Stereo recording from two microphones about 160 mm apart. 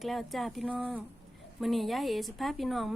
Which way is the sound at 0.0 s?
Centre (ahead or behind).